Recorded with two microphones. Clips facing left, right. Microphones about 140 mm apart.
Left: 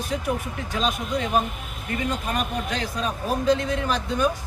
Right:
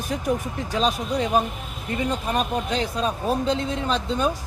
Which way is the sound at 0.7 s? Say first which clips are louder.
Right 2 dB; 35° right (ahead or behind).